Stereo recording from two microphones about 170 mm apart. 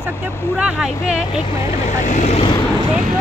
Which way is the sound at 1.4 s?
35° left (ahead or behind).